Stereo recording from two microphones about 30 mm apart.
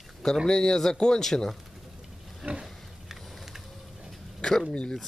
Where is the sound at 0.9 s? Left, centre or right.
Left.